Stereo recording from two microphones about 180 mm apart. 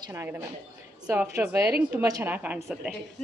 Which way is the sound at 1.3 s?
15° right (ahead or behind).